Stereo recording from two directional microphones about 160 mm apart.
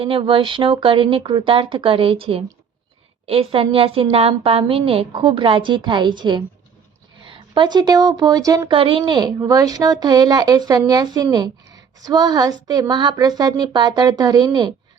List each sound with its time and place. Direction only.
0.0 s speech: 35° right (ahead or behind)